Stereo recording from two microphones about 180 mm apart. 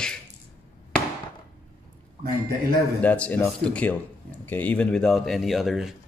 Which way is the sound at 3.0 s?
10° left (ahead or behind).